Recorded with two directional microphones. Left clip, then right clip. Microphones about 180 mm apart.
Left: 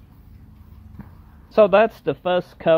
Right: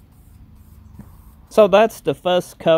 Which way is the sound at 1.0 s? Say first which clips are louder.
Left 1 dB; 15° right (ahead or behind).